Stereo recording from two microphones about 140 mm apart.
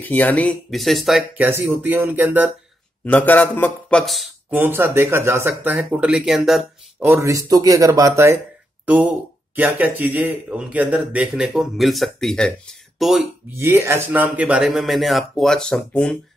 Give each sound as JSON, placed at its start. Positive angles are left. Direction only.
{"t": 0.0, "sound": "speech", "side_deg": 10}
{"t": 1.4, "sound": "speech", "side_deg": -15}
{"t": 3.1, "sound": "speech", "side_deg": 10}
{"t": 4.0, "sound": "speech", "side_deg": 0}
{"t": 4.6, "sound": "speech", "side_deg": -15}
{"t": 7.0, "sound": "speech", "side_deg": -15}
{"t": 8.8, "sound": "speech", "side_deg": -10}
{"t": 13.6, "sound": "speech", "side_deg": -20}